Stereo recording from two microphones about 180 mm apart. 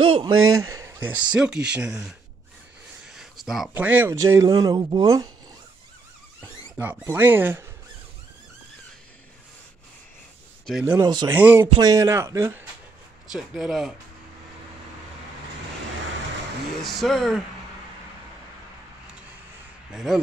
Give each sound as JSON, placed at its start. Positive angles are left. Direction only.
{"t": 0.1, "sound": "a man's voice", "side_deg": -20}
{"t": 6.7, "sound": "a man's voice", "side_deg": -10}
{"t": 10.7, "sound": "speech", "side_deg": -5}
{"t": 11.0, "sound": "speech", "side_deg": -20}
{"t": 11.3, "sound": "a man's voice", "side_deg": -10}
{"t": 11.7, "sound": "a man's voice", "side_deg": -20}
{"t": 13.3, "sound": "speech", "side_deg": 0}
{"t": 16.8, "sound": "speech", "side_deg": 0}
{"t": 19.9, "sound": "speech", "side_deg": -5}